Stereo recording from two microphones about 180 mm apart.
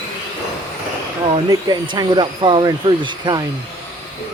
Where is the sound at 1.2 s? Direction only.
25° right (ahead or behind).